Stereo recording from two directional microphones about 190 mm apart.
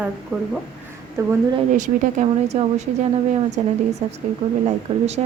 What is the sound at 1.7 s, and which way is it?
Speech, 40° right (ahead or behind).